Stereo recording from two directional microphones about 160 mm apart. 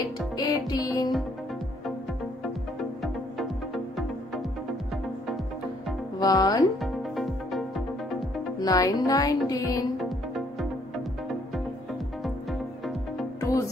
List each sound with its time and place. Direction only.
0.4 s music: 25° left (ahead or behind)
3.0 s music: centre (ahead or behind)
6.1 s speech: 25° left (ahead or behind)
6.8 s music: centre (ahead or behind)
8.5 s music: 25° left (ahead or behind)
9.9 s music: centre (ahead or behind)
12.2 s music: centre (ahead or behind)
13.4 s music: 20° left (ahead or behind)